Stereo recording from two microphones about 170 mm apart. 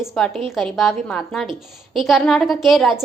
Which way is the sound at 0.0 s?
Centre (ahead or behind).